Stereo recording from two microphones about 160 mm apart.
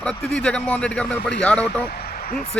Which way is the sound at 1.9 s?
65° left (ahead or behind).